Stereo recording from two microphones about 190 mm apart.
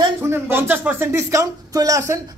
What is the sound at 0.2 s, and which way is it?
A woman's voice, 10° right (ahead or behind).